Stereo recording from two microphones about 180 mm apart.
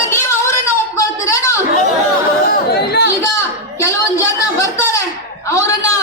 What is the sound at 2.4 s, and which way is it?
Chatter, 65° left (ahead or behind).